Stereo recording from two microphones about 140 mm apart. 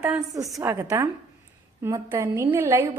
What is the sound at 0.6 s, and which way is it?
A woman's voice, 20° right (ahead or behind).